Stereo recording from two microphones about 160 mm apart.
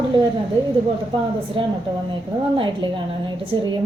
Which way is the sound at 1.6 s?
35° right (ahead or behind).